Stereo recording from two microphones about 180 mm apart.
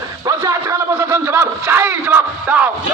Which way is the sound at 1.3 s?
15° right (ahead or behind).